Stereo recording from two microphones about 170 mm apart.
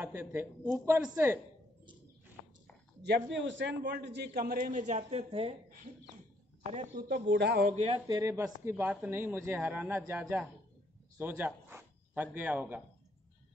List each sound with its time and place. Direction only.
0.0 s speech: 15° right (ahead or behind)
3.3 s a man's voice: 90° right; by 5.6 s 35° right (ahead or behind)
7.0 s a man's voice: 65° right (ahead or behind)
7.7 s speech: 40° right (ahead or behind)
8.1 s speech: 20° right (ahead or behind)